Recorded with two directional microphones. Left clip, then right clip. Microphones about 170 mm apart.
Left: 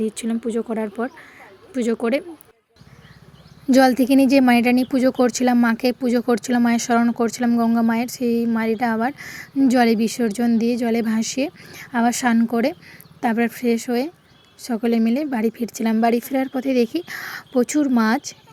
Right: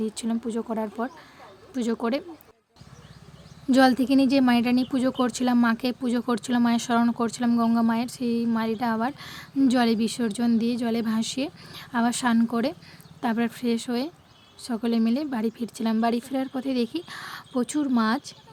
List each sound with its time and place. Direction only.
0.3 s a woman's voice: 10° left (ahead or behind)
3.7 s a woman's voice: 20° left (ahead or behind)